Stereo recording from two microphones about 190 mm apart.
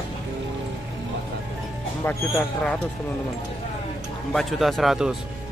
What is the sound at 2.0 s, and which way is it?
Speech, 10° left (ahead or behind).